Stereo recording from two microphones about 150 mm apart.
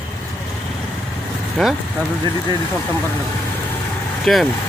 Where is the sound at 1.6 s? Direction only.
Centre (ahead or behind).